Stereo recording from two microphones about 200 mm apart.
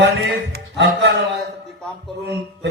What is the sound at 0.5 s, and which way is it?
Music, 60° right (ahead or behind).